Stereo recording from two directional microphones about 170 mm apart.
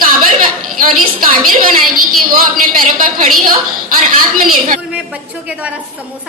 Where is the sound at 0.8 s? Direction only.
55° right (ahead or behind).